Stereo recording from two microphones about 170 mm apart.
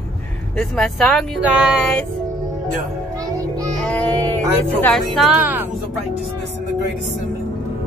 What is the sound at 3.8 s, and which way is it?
Music, 10° left (ahead or behind).